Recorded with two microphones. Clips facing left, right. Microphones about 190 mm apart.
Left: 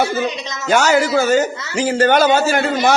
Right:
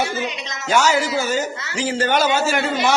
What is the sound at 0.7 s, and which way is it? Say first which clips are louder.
A man's voice: left 4 dB; 55° left (ahead or behind).